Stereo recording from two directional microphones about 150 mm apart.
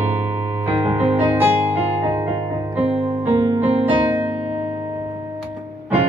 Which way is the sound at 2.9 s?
40° right (ahead or behind).